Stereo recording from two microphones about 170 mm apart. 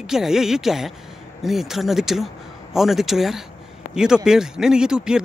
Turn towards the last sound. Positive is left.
turn(degrees=-5)  # may be behind; listen again after turning